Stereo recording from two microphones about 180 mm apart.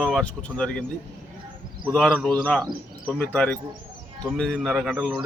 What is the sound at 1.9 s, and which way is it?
A man's voice, 5° left (ahead or behind).